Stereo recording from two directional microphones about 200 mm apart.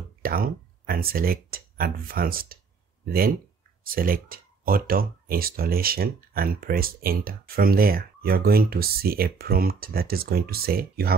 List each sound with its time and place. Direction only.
0.2 s speech: 45° right (ahead or behind)